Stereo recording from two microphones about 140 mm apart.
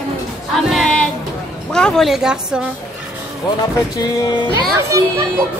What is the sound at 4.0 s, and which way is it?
Speech, 30° left (ahead or behind).